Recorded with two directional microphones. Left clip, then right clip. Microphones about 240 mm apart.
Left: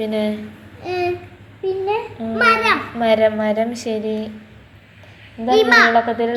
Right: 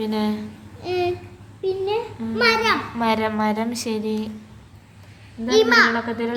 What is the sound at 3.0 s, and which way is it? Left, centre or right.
A woman's voice, centre.